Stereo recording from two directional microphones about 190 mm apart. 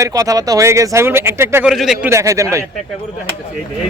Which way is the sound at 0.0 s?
20° right (ahead or behind).